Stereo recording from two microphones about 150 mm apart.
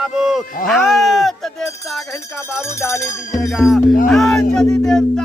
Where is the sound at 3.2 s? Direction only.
Centre (ahead or behind).